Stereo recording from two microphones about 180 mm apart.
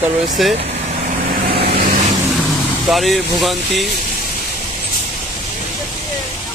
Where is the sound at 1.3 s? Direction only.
60° right (ahead or behind).